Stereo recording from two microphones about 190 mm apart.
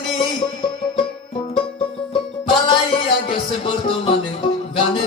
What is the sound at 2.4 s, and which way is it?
Music, 25° left (ahead or behind).